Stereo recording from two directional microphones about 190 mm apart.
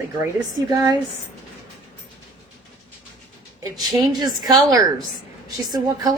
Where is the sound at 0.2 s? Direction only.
20° right (ahead or behind).